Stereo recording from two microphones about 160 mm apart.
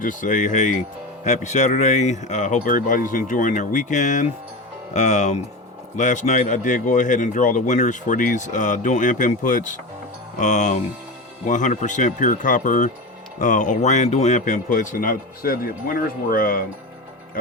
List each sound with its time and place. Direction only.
0.0 s speech: 55° left (ahead or behind)